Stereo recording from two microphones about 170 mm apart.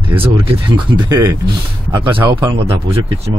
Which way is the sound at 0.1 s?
30° right (ahead or behind).